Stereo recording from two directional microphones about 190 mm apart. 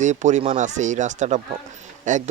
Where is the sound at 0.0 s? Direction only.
40° right (ahead or behind).